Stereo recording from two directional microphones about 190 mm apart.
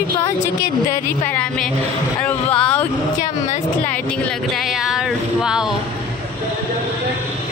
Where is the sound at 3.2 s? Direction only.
40° left (ahead or behind).